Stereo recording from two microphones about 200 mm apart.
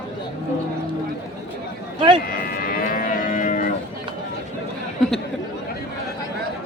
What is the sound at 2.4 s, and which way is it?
Cattle, 45° left (ahead or behind).